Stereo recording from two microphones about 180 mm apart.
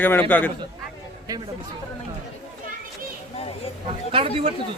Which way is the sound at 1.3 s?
20° right (ahead or behind).